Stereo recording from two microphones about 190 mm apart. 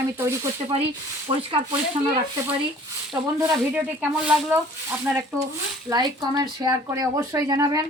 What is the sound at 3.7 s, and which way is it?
Speech, 10° right (ahead or behind).